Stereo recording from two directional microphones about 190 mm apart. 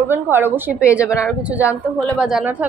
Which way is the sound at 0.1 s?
10° right (ahead or behind).